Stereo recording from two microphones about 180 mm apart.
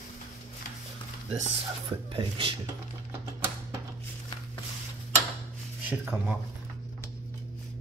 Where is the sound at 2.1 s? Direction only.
30° right (ahead or behind).